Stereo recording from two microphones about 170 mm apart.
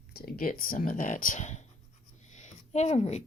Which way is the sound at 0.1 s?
65° left (ahead or behind).